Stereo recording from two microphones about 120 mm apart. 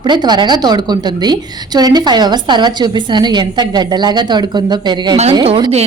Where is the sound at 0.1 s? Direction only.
40° right (ahead or behind).